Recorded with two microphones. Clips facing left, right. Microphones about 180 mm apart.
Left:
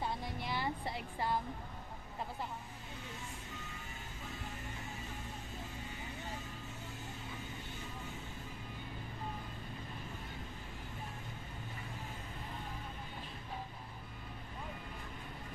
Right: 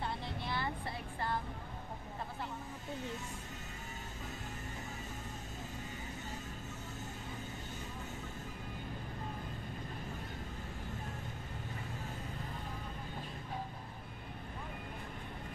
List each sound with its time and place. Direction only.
0.0 s vehicle: 20° left (ahead or behind)